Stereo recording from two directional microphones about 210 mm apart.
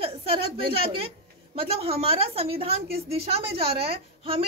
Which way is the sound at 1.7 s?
25° right (ahead or behind).